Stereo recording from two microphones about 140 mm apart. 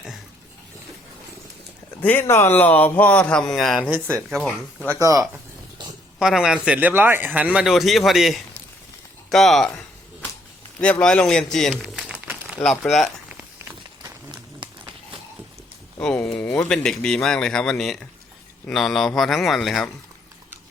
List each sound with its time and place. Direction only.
2.0 s speech: 10° left (ahead or behind)
4.9 s speech: 25° right (ahead or behind)
6.1 s speech: 5° right (ahead or behind)
12.8 s speech: centre (ahead or behind)
14.0 s run: 30° right (ahead or behind)
16.0 s speech: 10° left (ahead or behind)